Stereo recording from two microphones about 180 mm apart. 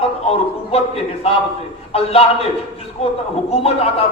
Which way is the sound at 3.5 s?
35° left (ahead or behind).